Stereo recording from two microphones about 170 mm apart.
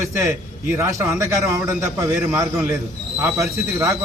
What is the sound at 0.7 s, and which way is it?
A man's voice, 15° right (ahead or behind).